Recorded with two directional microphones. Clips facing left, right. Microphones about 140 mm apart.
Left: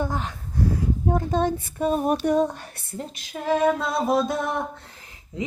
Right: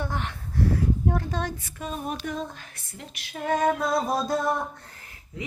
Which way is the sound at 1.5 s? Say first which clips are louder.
Left 11 dB; 45° left (ahead or behind).